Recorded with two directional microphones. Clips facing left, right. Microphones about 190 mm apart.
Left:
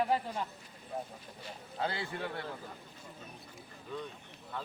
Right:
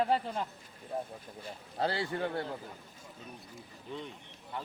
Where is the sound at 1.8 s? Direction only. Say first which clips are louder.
Right 4 dB; 35° right (ahead or behind).